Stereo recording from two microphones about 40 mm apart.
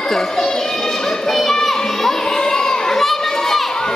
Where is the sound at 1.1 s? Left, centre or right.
Centre.